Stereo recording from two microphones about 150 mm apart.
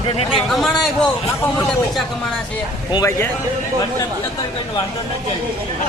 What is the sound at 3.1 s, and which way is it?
Speech, 15° left (ahead or behind).